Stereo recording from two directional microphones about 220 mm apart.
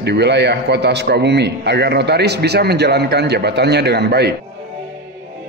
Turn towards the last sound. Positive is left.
turn(degrees=-50)  # may be behind; listen again after turning